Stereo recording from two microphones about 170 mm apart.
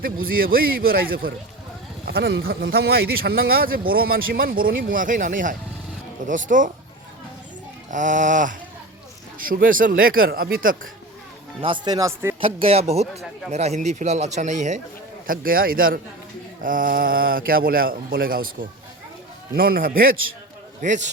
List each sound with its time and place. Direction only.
0.0 s a man's voice: 60° right (ahead or behind)
7.9 s a man's voice: 45° right (ahead or behind)
11.6 s speech: 25° right (ahead or behind)
12.4 s a man's voice: 35° right (ahead or behind)
15.3 s speech: 55° right (ahead or behind)
20.8 s a man's voice: 45° right (ahead or behind)